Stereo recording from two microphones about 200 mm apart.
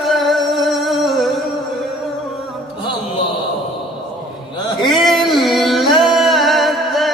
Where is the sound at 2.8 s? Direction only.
20° left (ahead or behind).